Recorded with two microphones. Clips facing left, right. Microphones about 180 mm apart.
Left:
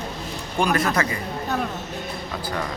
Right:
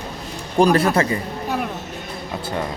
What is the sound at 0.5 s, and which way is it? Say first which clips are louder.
Speech: right 6 dB; 35° right (ahead or behind).